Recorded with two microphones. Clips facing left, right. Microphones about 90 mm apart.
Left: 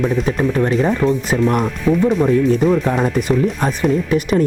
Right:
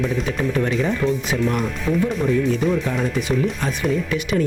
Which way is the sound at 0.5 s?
40° left (ahead or behind).